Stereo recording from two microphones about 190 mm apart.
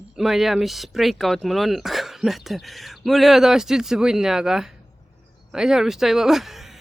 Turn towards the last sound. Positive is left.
turn(degrees=0)  # may be behind; listen again after turning